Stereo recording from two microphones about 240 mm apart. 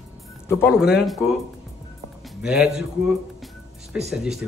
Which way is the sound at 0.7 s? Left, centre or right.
Centre.